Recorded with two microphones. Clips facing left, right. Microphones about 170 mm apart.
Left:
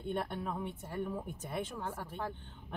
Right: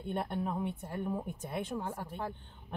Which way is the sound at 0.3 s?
15° right (ahead or behind).